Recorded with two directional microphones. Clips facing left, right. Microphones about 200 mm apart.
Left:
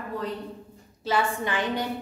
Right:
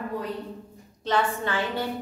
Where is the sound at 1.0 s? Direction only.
10° left (ahead or behind).